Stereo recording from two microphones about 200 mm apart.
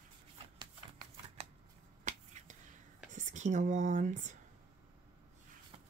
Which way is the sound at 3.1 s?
35° right (ahead or behind).